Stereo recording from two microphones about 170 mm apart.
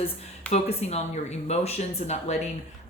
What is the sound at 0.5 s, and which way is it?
Speech, 40° left (ahead or behind).